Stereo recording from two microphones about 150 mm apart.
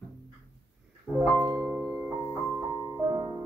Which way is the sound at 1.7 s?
15° right (ahead or behind).